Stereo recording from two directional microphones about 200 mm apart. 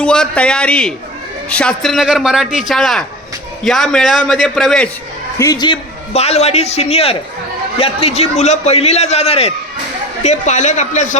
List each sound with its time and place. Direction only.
0.0 s a man's voice: 5° left (ahead or behind)
5.4 s a man's voice: 20° left (ahead or behind); by 11.2 s 35° left (ahead or behind)